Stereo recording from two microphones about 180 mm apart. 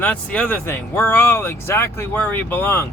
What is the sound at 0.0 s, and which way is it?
Speech, 10° left (ahead or behind).